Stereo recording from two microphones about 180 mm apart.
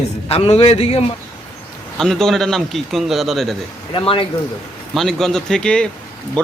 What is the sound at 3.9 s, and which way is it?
Speech, 30° left (ahead or behind).